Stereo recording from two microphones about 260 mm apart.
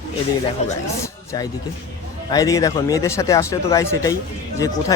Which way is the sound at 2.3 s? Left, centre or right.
Centre.